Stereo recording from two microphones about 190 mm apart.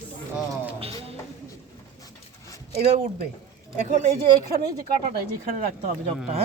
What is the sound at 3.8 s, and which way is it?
Speech, 35° right (ahead or behind).